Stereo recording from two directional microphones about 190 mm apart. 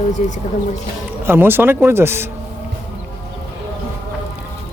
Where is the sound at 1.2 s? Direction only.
10° right (ahead or behind).